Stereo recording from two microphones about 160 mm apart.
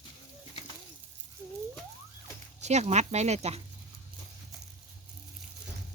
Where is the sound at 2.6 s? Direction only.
45° right (ahead or behind).